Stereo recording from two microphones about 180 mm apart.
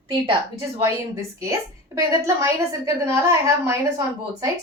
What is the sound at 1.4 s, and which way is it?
A woman's voice, 15° right (ahead or behind).